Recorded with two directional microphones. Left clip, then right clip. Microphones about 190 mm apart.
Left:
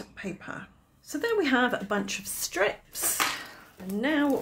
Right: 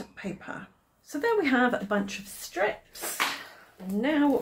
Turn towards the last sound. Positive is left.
turn(degrees=25)  # may be behind; listen again after turning